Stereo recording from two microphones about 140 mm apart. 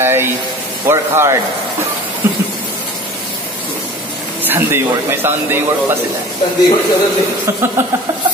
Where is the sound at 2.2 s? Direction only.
20° right (ahead or behind).